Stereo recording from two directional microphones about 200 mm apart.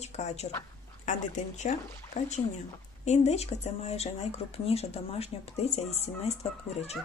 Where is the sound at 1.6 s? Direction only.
35° left (ahead or behind).